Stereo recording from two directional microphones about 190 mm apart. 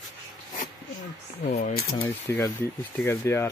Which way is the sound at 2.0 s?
10° left (ahead or behind).